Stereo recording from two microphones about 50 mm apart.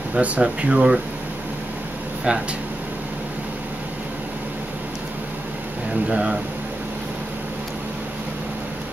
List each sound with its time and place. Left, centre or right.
0.1 s speech: right
2.3 s speech: centre
6.0 s speech: centre